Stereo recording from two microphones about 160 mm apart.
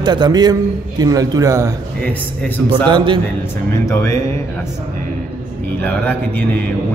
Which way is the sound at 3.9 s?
20° left (ahead or behind).